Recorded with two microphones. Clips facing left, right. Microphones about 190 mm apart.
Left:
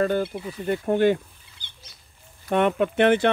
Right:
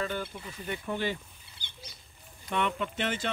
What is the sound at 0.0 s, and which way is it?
Speech, 45° left (ahead or behind).